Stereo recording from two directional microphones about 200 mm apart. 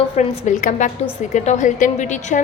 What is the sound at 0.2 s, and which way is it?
A woman's voice, 40° left (ahead or behind).